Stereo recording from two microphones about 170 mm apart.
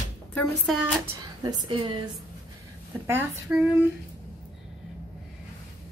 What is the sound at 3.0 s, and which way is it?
Speech, 10° right (ahead or behind).